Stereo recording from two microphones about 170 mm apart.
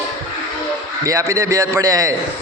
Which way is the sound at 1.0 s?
20° right (ahead or behind).